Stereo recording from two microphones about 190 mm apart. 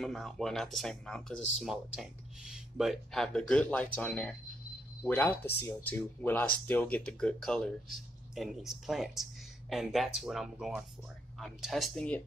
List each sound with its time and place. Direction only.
0.0 s speech: centre (ahead or behind)